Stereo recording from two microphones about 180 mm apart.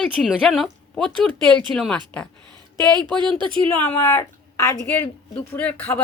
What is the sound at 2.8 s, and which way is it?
Speech, 20° right (ahead or behind).